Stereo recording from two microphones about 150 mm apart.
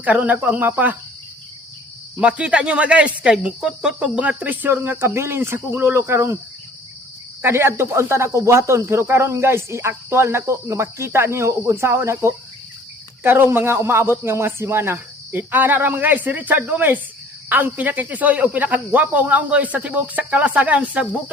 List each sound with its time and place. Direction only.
0.0 s speech: 10° right (ahead or behind)
2.1 s speech: 10° right (ahead or behind)
7.4 s speech: 15° right (ahead or behind)